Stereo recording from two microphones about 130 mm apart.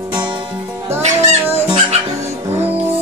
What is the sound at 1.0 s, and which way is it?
Music, 50° right (ahead or behind).